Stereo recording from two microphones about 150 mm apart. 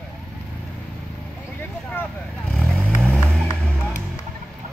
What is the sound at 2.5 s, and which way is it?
Vehicle, centre (ahead or behind).